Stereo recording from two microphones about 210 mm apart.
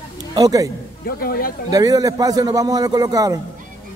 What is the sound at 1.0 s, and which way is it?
Speech, 45° left (ahead or behind).